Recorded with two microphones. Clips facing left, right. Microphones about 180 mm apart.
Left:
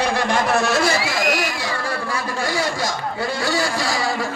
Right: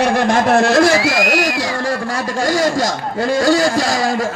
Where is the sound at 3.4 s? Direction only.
45° right (ahead or behind).